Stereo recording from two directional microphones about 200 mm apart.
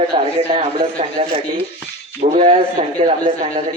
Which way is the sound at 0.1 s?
25° right (ahead or behind).